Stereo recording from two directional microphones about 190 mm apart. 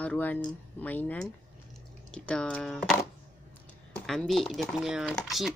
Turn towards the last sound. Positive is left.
turn(degrees=0)  # may be behind; listen again after turning